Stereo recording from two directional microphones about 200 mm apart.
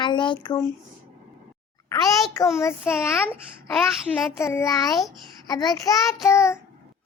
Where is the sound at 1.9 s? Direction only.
15° left (ahead or behind).